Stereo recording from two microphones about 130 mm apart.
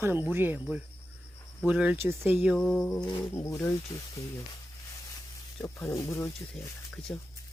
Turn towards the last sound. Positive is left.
turn(degrees=20)  # may be behind; listen again after turning